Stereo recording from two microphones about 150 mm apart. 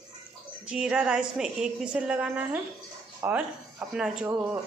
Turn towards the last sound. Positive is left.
turn(degrees=-5)  # may be behind; listen again after turning